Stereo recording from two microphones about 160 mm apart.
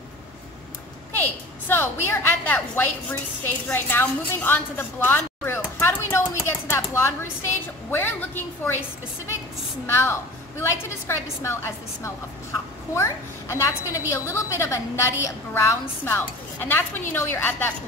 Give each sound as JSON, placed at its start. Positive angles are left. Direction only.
{"t": 1.1, "sound": "a woman's voice", "side_deg": 10}
{"t": 9.8, "sound": "a woman's voice", "side_deg": 15}